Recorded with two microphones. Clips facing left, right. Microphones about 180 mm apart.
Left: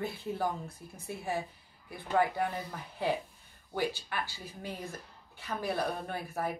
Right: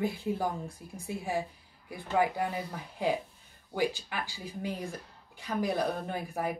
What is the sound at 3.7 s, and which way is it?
Speech, 15° right (ahead or behind).